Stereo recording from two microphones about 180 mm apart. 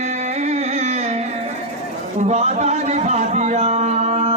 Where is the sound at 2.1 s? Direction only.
40° right (ahead or behind).